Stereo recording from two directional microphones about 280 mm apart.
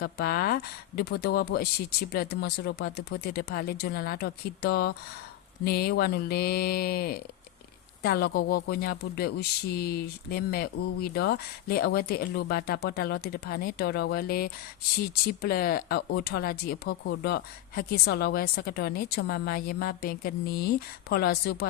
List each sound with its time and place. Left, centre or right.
0.0 s speech: left